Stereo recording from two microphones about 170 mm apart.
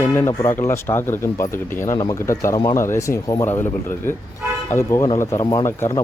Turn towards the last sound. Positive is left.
turn(degrees=15)  # may be behind; listen again after turning